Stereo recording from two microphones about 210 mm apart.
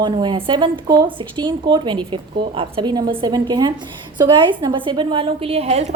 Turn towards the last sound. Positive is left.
turn(degrees=-30)  # may be behind; listen again after turning